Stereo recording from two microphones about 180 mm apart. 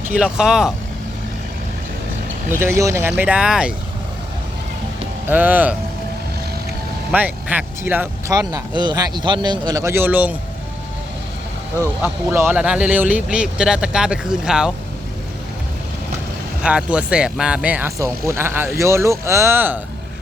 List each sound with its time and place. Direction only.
0.1 s speech: 5° right (ahead or behind)
2.6 s speech: 15° right (ahead or behind)
5.3 s speech: 10° right (ahead or behind)
7.1 s speech: 10° right (ahead or behind)
11.8 s speech: 15° right (ahead or behind)
16.6 s speech: 5° right (ahead or behind)